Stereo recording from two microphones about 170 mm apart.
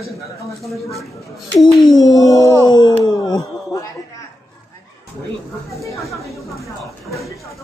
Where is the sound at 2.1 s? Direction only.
20° left (ahead or behind).